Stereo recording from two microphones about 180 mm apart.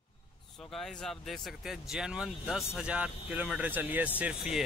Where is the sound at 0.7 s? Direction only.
Centre (ahead or behind).